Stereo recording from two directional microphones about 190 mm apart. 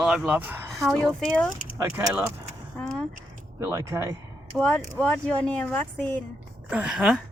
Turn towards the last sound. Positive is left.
turn(degrees=-5)  # may be behind; listen again after turning